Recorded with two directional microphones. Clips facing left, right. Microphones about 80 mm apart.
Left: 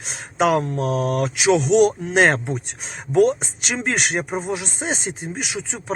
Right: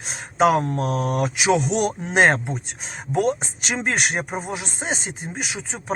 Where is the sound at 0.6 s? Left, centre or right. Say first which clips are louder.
Left 2 dB; right.